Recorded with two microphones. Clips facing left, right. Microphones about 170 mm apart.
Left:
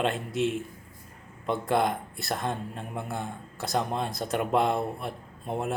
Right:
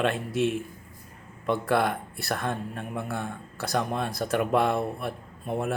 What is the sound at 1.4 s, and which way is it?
Speech, 20° left (ahead or behind).